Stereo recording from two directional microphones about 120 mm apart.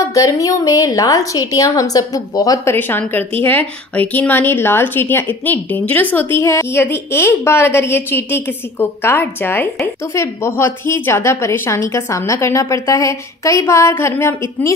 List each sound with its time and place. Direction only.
0.0 s a woman's voice: 25° left (ahead or behind)